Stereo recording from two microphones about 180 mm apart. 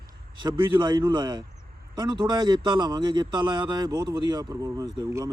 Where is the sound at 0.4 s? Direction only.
25° right (ahead or behind).